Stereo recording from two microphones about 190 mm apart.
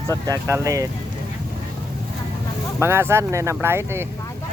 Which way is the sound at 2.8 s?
15° right (ahead or behind).